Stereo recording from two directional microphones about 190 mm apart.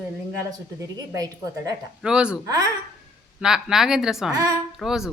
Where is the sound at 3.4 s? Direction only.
5° right (ahead or behind).